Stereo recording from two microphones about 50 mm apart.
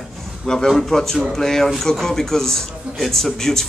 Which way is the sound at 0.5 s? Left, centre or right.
Centre.